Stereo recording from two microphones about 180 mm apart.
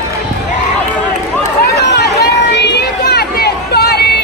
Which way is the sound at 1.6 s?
65° left (ahead or behind).